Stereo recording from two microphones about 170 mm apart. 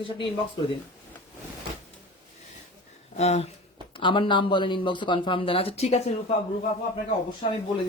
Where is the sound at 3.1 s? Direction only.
40° left (ahead or behind).